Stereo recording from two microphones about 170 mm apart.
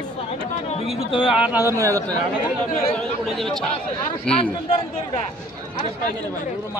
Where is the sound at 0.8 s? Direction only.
30° left (ahead or behind).